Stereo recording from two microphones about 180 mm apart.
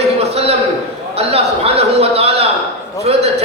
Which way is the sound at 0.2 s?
35° right (ahead or behind).